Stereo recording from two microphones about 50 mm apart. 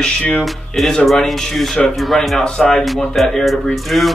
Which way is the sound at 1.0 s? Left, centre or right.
Centre.